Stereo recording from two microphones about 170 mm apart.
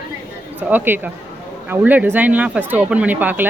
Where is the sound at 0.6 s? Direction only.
10° right (ahead or behind).